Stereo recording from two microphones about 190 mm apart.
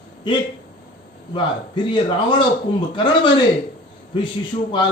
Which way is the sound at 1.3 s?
25° left (ahead or behind).